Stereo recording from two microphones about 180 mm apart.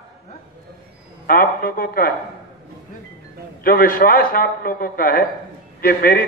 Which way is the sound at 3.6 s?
55° left (ahead or behind).